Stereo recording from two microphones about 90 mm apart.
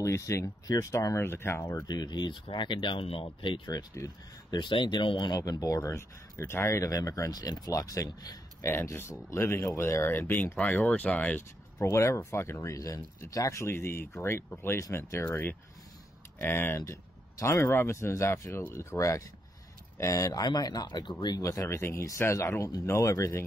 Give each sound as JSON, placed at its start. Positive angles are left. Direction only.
{"t": 0.0, "sound": "speech", "side_deg": 35}
{"t": 1.9, "sound": "speech", "side_deg": 50}
{"t": 3.7, "sound": "speech", "side_deg": 40}
{"t": 4.6, "sound": "speech", "side_deg": 60}
{"t": 5.3, "sound": "speech", "side_deg": 45}
{"t": 8.5, "sound": "speech", "side_deg": 30}
{"t": 11.8, "sound": "speech", "side_deg": 30}
{"t": 21.4, "sound": "speech", "side_deg": 35}